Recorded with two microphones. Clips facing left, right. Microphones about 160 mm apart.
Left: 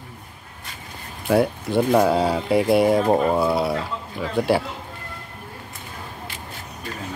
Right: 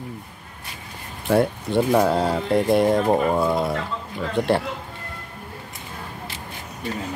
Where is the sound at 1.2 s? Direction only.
Centre (ahead or behind).